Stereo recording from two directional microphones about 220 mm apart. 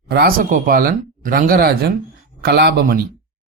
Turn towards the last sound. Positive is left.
turn(degrees=-45)  # may be behind; listen again after turning